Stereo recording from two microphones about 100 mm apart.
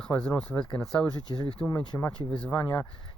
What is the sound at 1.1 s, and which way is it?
Speech, 45° left (ahead or behind).